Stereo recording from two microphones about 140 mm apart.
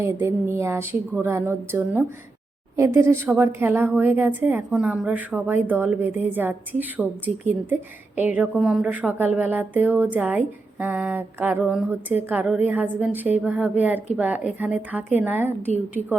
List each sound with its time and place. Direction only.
0.0 s a woman's voice: 20° right (ahead or behind)